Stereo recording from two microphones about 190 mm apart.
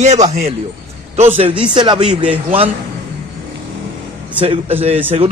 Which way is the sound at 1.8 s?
25° right (ahead or behind).